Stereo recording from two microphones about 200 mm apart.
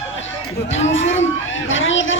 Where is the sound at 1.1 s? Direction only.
70° left (ahead or behind).